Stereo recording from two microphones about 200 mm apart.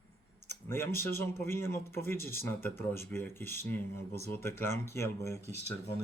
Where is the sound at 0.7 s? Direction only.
10° left (ahead or behind).